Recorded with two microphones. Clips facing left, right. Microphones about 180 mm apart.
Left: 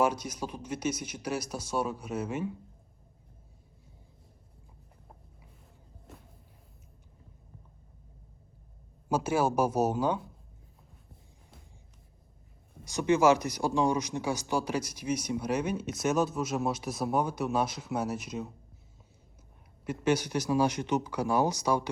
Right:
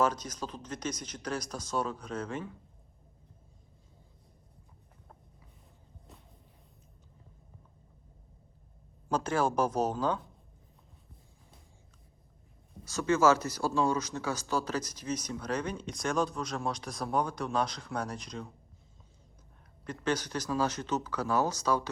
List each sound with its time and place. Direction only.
0.0 s speech: 10° left (ahead or behind)
9.0 s speech: 10° left (ahead or behind)
12.8 s speech: 15° left (ahead or behind)
19.8 s speech: 10° left (ahead or behind)